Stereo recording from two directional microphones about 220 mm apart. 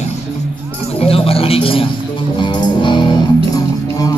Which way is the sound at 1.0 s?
25° left (ahead or behind).